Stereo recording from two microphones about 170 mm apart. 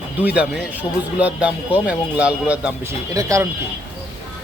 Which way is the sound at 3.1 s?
20° right (ahead or behind).